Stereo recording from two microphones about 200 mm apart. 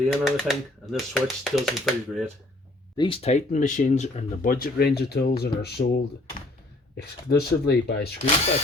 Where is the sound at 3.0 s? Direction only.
25° left (ahead or behind); by 8.1 s 55° left (ahead or behind).